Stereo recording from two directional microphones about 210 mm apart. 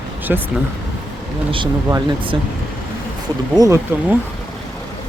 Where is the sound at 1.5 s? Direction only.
25° right (ahead or behind).